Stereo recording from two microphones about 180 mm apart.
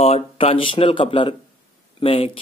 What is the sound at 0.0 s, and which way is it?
Speech, 35° left (ahead or behind).